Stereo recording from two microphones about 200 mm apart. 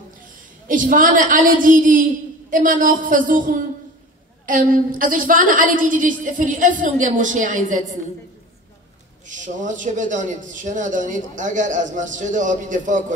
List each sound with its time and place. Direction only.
0.7 s a woman's voice: 40° right (ahead or behind)
9.2 s a man's voice: 40° right (ahead or behind)